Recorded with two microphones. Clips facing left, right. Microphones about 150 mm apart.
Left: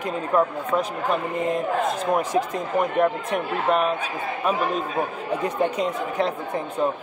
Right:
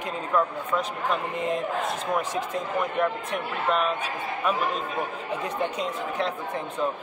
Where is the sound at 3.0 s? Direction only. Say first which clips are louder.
Left 5 dB; 35° left (ahead or behind).